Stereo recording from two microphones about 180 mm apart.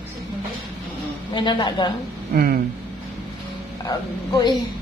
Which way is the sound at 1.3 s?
25° left (ahead or behind).